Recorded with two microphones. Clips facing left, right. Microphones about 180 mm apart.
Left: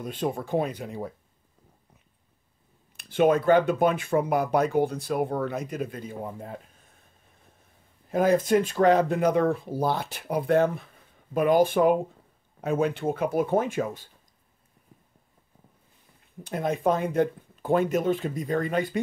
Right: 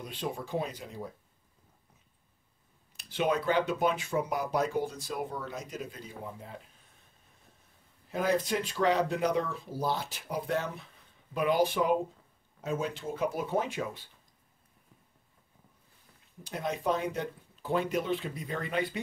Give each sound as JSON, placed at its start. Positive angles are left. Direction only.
{"t": 0.0, "sound": "speech", "side_deg": 50}
{"t": 3.0, "sound": "speech", "side_deg": 50}
{"t": 8.1, "sound": "speech", "side_deg": 50}
{"t": 16.4, "sound": "speech", "side_deg": 50}